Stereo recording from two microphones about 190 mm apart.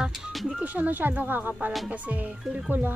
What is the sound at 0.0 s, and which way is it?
Speech, centre (ahead or behind).